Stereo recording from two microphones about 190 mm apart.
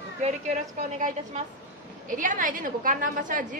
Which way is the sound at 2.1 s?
45° right (ahead or behind).